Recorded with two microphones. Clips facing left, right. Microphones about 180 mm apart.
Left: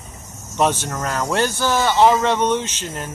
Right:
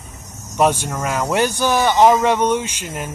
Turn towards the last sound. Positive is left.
turn(degrees=-10)  # may be behind; listen again after turning